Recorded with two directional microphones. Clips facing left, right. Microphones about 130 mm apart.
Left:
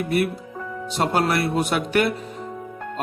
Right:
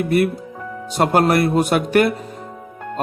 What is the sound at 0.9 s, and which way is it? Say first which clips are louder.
Speech: right 6 dB; 45° right (ahead or behind).